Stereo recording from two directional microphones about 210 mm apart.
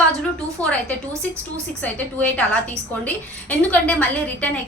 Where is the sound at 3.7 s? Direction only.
5° left (ahead or behind).